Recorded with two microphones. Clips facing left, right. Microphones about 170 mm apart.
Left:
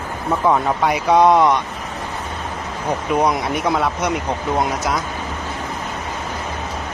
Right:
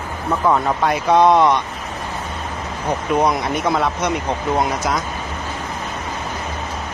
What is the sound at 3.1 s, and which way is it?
Speech, 5° left (ahead or behind).